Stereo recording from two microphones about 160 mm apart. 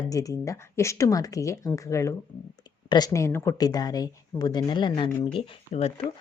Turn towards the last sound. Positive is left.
turn(degrees=40)  # may be behind; listen again after turning